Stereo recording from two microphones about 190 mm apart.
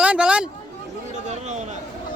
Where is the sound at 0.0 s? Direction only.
5° right (ahead or behind).